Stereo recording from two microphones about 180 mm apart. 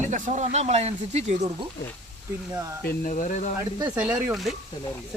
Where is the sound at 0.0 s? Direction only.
40° right (ahead or behind).